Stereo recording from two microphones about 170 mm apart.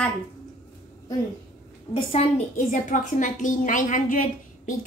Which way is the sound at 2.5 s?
50° left (ahead or behind).